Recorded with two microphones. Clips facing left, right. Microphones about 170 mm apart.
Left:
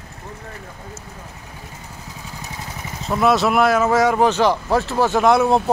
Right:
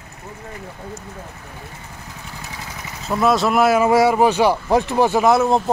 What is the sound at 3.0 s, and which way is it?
Speech, centre (ahead or behind).